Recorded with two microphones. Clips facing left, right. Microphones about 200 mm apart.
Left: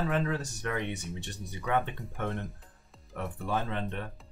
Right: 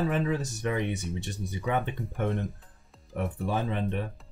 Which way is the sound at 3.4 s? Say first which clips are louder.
Right 2 dB; 10° right (ahead or behind).